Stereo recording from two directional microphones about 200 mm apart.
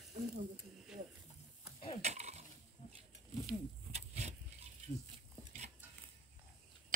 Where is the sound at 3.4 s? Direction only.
30° right (ahead or behind).